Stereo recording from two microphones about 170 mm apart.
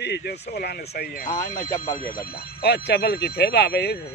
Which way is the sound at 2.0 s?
55° left (ahead or behind).